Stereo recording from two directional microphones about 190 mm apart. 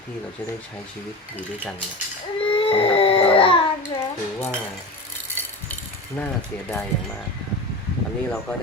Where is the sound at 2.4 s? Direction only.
30° left (ahead or behind).